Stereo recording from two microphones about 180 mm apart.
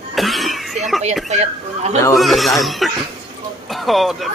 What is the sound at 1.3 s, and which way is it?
Speech, 40° right (ahead or behind).